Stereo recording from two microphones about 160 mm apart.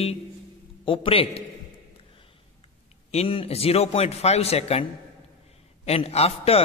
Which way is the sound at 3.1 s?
40° left (ahead or behind).